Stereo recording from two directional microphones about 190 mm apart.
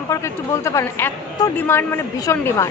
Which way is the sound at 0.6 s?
15° left (ahead or behind).